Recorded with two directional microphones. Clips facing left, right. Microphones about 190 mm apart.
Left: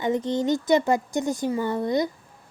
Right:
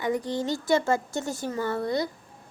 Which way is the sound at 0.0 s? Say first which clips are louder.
Left 4 dB; 20° left (ahead or behind).